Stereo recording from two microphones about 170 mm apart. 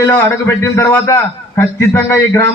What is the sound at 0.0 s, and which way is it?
A man's voice, 10° left (ahead or behind).